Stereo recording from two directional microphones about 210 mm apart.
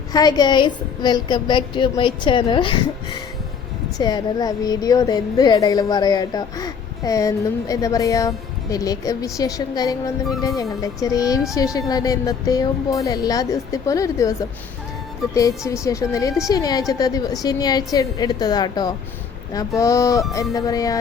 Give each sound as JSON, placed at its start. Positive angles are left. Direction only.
{"t": 0.1, "sound": "a woman's voice", "side_deg": 20}
{"t": 15.4, "sound": "a woman's voice", "side_deg": 15}